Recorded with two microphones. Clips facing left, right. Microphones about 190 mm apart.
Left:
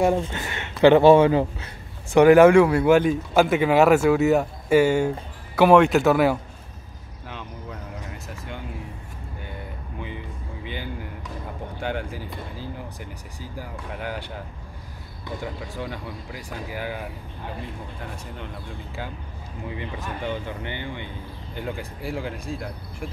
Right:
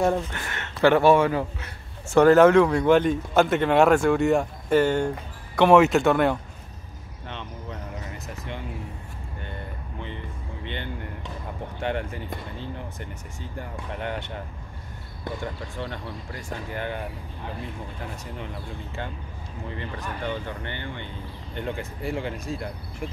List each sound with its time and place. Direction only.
0.2 s a man's voice: 20° left (ahead or behind)
2.1 s speech: 10° left (ahead or behind)
7.2 s a sound: 5° left (ahead or behind)
11.8 s speech: centre (ahead or behind)
15.8 s speech: 5° left (ahead or behind)
19.7 s speech: 10° left (ahead or behind)